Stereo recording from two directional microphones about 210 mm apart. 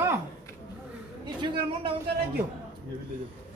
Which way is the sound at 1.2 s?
25° right (ahead or behind).